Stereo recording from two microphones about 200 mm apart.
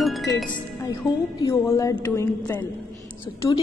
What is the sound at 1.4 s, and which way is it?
A woman's voice, 15° left (ahead or behind).